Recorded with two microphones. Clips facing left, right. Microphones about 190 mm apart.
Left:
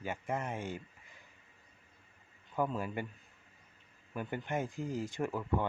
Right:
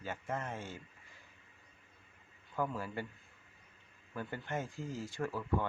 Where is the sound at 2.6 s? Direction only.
15° left (ahead or behind).